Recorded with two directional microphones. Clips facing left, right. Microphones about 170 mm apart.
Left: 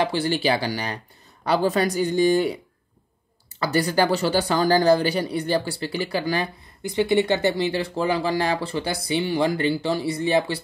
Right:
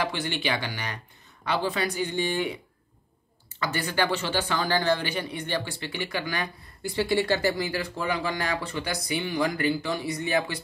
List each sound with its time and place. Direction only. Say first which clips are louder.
0.0 s a man's voice: left 7 dB; 35° left (ahead or behind)
6.8 s speech: left 5 dB; 20° left (ahead or behind)